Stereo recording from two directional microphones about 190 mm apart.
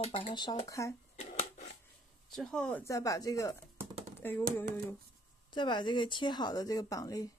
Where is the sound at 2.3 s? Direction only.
5° left (ahead or behind).